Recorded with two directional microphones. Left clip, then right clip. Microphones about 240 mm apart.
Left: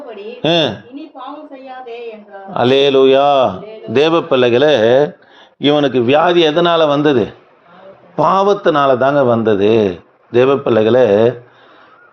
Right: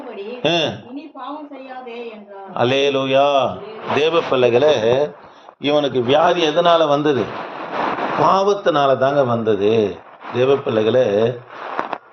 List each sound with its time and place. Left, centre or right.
0.4 s a man's voice: left
2.5 s a man's voice: left
8.2 s a man's voice: left